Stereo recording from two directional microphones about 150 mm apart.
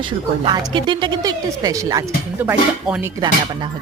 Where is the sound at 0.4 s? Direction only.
35° right (ahead or behind).